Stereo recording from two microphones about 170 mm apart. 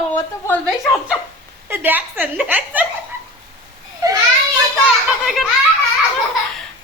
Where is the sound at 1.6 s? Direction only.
10° right (ahead or behind).